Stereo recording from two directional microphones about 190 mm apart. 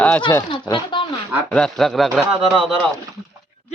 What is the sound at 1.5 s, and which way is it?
Speech, 5° left (ahead or behind).